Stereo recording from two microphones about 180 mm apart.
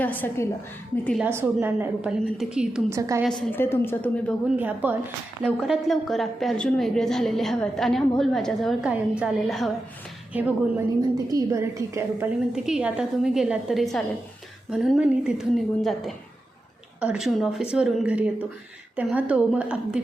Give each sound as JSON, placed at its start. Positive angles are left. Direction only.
{"t": 0.0, "sound": "a woman's voice", "side_deg": 10}
{"t": 1.2, "sound": "a woman's voice", "side_deg": -15}
{"t": 2.9, "sound": "a woman's voice", "side_deg": -15}
{"t": 3.5, "sound": "a woman's voice", "side_deg": 15}
{"t": 4.5, "sound": "a woman's voice", "side_deg": -10}
{"t": 5.4, "sound": "a woman's voice", "side_deg": 5}
{"t": 11.1, "sound": "a woman's voice", "side_deg": -20}
{"t": 12.5, "sound": "a woman's voice", "side_deg": -5}